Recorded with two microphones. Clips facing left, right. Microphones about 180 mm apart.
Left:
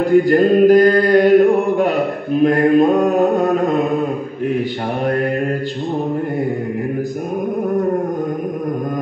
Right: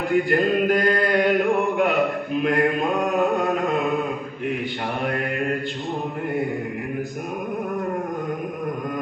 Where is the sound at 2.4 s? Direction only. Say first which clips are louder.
Left 10 dB; 35° left (ahead or behind).